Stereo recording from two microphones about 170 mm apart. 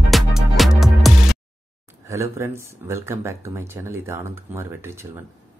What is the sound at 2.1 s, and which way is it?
Speech, 15° right (ahead or behind).